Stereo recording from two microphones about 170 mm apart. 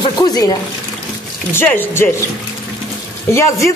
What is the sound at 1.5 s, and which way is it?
Speech, 10° left (ahead or behind).